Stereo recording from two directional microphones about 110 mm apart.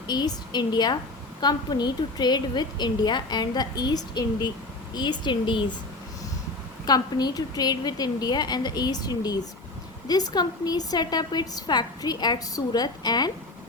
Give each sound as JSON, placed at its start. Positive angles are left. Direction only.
{"t": 0.1, "sound": "a woman's voice", "side_deg": 40}
{"t": 6.8, "sound": "a woman's voice", "side_deg": 40}